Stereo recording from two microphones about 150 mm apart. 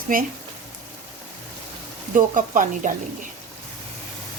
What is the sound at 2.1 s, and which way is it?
Speech, 60° right (ahead or behind).